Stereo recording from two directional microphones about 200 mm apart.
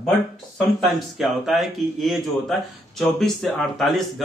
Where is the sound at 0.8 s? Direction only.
Centre (ahead or behind).